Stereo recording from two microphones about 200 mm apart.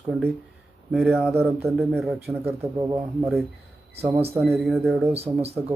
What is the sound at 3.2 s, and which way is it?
Speech, centre (ahead or behind).